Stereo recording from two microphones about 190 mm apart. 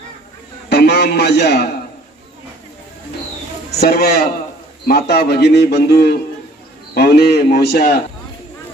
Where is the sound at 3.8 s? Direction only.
55° left (ahead or behind).